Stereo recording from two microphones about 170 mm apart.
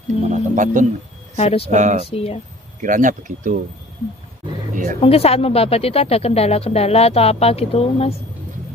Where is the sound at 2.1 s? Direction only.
35° left (ahead or behind).